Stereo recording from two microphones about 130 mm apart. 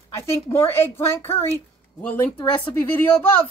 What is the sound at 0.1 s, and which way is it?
A woman's voice, 20° left (ahead or behind).